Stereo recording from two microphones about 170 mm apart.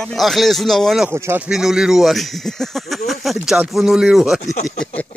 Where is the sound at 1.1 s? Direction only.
15° right (ahead or behind).